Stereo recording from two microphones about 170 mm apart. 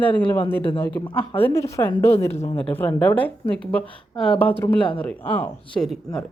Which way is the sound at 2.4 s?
35° left (ahead or behind).